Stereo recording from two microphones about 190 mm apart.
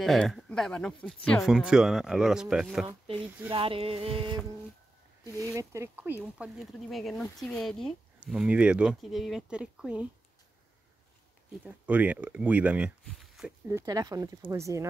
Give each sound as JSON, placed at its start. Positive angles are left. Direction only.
{"t": 0.0, "sound": "speech", "side_deg": 0}
{"t": 2.9, "sound": "speech", "side_deg": -25}
{"t": 3.5, "sound": "a sound", "side_deg": -30}
{"t": 5.4, "sound": "speech", "side_deg": -15}
{"t": 6.3, "sound": "speech", "side_deg": -5}
{"t": 11.6, "sound": "speech", "side_deg": -10}
{"t": 13.7, "sound": "speech", "side_deg": -15}